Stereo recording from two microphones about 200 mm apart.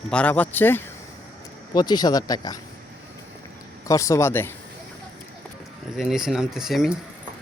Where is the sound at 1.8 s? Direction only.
20° left (ahead or behind).